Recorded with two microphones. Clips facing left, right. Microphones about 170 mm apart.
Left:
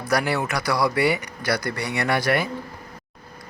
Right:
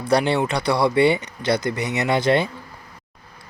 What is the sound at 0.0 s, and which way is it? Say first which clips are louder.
Speech: right 4 dB; 30° right (ahead or behind).